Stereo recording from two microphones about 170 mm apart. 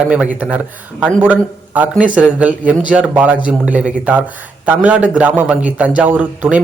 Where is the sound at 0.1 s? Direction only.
5° right (ahead or behind).